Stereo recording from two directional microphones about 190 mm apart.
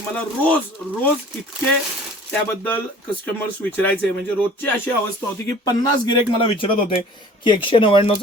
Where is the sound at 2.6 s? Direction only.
10° left (ahead or behind).